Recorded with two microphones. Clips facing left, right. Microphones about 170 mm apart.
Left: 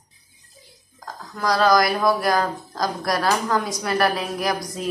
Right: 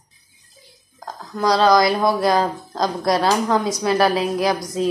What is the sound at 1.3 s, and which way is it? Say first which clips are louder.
A woman's voice: right 3 dB; 25° right (ahead or behind).